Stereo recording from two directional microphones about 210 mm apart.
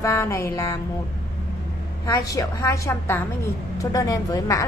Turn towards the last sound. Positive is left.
turn(degrees=15)  # may be behind; listen again after turning